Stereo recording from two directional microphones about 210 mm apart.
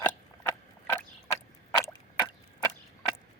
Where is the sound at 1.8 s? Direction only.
15° left (ahead or behind).